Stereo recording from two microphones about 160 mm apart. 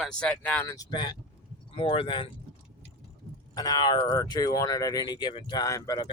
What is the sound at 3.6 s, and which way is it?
Speech, 25° left (ahead or behind).